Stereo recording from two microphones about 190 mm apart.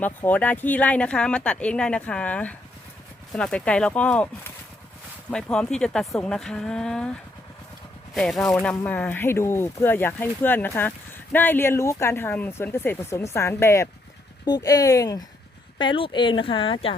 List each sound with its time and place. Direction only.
0.0 s a woman's voice: 10° left (ahead or behind)
5.3 s a woman's voice: 5° left (ahead or behind); by 16.9 s 30° left (ahead or behind)